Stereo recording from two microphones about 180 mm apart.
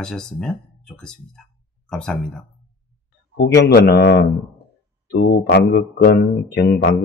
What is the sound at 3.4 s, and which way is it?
Speech, 70° left (ahead or behind).